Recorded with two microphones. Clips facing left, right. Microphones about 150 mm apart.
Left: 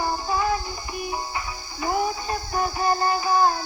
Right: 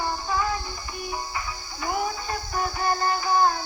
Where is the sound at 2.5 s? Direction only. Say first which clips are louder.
Left 3 dB; 25° left (ahead or behind).